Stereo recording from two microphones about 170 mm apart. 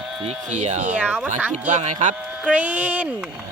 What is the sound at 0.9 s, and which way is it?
Speech, 5° right (ahead or behind).